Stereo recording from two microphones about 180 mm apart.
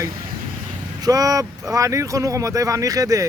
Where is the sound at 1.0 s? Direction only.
20° right (ahead or behind).